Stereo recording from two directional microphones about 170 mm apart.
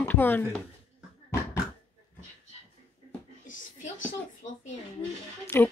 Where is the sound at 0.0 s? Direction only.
10° left (ahead or behind).